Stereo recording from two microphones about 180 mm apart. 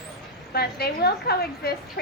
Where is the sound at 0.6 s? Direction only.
60° left (ahead or behind).